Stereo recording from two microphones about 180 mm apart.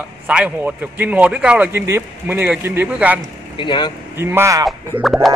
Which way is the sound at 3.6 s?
25° left (ahead or behind).